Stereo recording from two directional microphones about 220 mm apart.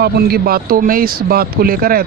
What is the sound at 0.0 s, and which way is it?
Speech, 45° right (ahead or behind).